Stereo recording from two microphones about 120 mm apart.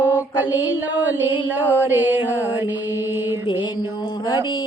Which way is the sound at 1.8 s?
15° right (ahead or behind).